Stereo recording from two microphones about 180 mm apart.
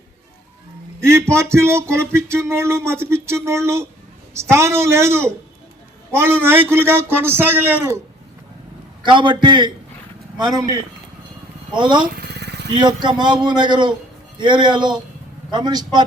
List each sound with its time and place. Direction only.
1.0 s speech: 15° right (ahead or behind)
9.0 s a man's voice: 25° right (ahead or behind)
12.0 s motorcycle: 60° right (ahead or behind)
12.8 s a man's voice: 25° right (ahead or behind)